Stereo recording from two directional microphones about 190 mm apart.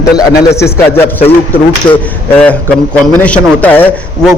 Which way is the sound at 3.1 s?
10° left (ahead or behind).